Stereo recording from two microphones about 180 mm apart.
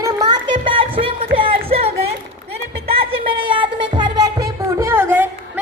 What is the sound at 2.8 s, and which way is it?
Music, 30° right (ahead or behind).